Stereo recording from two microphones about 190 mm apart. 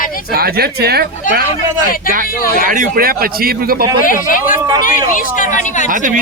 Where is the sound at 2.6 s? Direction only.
50° right (ahead or behind).